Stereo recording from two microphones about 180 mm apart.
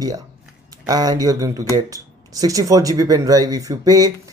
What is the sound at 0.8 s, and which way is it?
Speech, 20° right (ahead or behind).